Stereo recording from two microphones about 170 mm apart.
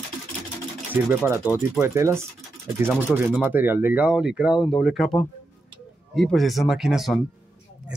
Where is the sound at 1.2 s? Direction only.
10° right (ahead or behind).